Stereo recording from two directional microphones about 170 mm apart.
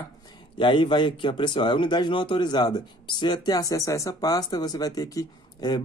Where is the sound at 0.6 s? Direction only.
30° left (ahead or behind).